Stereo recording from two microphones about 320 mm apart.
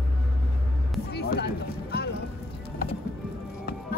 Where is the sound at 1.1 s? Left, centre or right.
Left.